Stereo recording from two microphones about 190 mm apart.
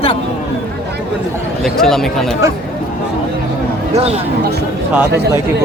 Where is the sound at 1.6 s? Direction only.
Centre (ahead or behind).